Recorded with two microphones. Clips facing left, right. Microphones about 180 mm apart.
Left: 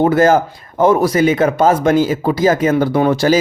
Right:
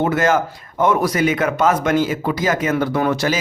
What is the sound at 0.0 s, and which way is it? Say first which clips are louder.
Speech: left 6 dB; 35° left (ahead or behind).